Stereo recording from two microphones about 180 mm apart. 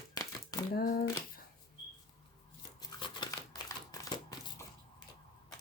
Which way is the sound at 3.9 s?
20° left (ahead or behind).